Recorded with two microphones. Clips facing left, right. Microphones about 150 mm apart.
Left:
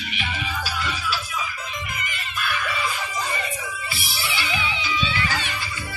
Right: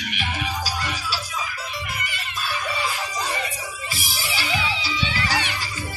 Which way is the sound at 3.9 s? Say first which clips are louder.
Even; 40° right (ahead or behind).